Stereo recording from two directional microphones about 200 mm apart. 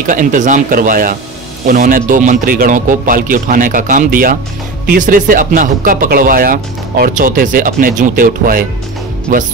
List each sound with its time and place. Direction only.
0.0 s speech: 40° right (ahead or behind)